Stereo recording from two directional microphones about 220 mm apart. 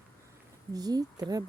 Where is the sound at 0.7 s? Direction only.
15° right (ahead or behind).